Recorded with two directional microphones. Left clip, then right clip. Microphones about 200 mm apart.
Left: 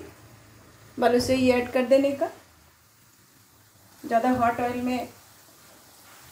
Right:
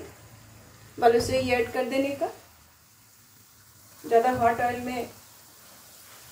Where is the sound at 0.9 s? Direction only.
55° left (ahead or behind).